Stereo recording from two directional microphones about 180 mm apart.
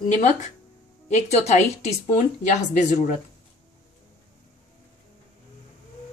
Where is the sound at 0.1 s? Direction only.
40° left (ahead or behind).